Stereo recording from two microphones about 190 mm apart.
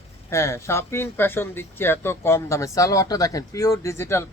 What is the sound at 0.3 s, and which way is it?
Speech, 15° left (ahead or behind).